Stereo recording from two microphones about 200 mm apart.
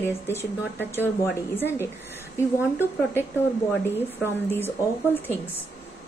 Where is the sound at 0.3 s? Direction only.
10° left (ahead or behind).